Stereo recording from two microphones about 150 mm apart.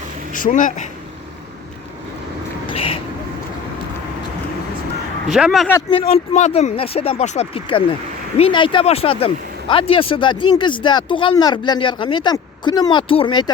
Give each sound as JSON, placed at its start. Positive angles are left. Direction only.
{"t": 0.3, "sound": "speech", "side_deg": 60}
{"t": 2.6, "sound": "a sound", "side_deg": 40}
{"t": 5.3, "sound": "speech", "side_deg": 0}
{"t": 5.9, "sound": "speech", "side_deg": 40}